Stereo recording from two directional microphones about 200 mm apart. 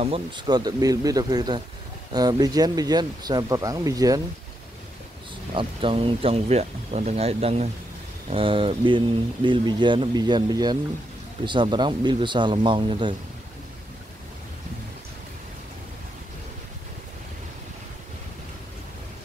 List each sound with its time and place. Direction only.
0.0 s speech: 25° right (ahead or behind)
5.5 s speech: 25° right (ahead or behind)